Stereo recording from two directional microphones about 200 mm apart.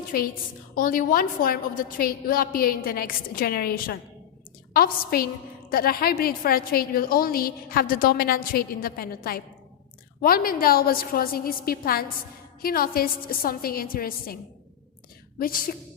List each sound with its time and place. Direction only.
0.8 s a woman's voice: 45° left (ahead or behind)
15.4 s a woman's voice: 45° left (ahead or behind)